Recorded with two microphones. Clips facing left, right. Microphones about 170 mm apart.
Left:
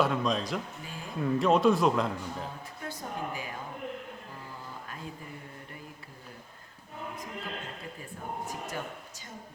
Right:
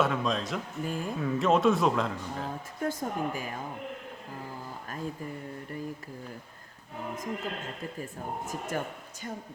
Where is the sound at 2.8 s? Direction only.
45° right (ahead or behind).